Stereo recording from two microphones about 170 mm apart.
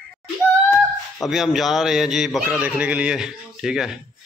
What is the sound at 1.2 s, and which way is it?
A man's voice, centre (ahead or behind).